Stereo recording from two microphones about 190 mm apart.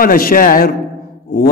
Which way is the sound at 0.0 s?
50° left (ahead or behind).